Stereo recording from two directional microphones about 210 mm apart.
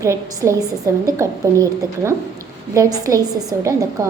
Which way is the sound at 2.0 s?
15° right (ahead or behind).